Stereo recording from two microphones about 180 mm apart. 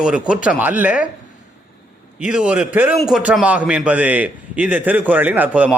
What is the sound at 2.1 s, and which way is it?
A man's voice, 5° right (ahead or behind).